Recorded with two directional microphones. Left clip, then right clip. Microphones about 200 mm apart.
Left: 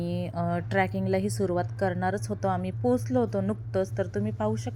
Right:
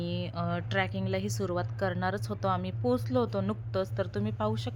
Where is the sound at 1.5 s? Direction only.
Centre (ahead or behind).